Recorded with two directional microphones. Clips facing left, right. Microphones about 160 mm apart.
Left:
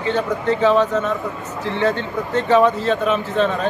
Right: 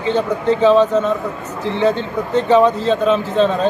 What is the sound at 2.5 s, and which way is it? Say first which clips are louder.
A man's voice: right 2 dB; 20° right (ahead or behind).